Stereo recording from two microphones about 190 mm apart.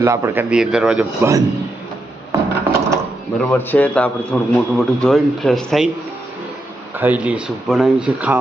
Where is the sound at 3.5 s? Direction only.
10° left (ahead or behind).